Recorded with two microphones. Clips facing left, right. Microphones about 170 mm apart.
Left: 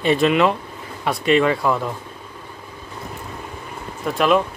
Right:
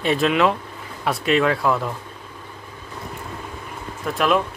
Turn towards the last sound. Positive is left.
turn(degrees=0)  # may be behind; listen again after turning